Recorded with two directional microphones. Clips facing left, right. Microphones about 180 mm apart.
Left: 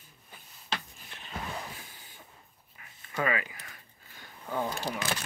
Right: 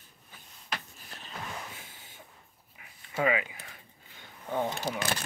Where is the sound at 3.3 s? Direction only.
20° right (ahead or behind).